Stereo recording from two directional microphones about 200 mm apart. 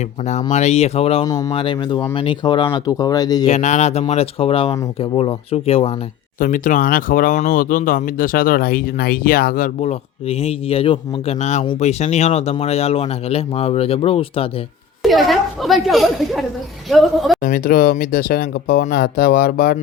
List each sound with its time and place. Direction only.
0.5 s speech: 35° left (ahead or behind)
1.2 s speech: 15° left (ahead or behind)
3.4 s speech: 35° left (ahead or behind)
6.4 s speech: 40° left (ahead or behind)
15.0 s a woman's voice: centre (ahead or behind)
17.4 s speech: 45° left (ahead or behind)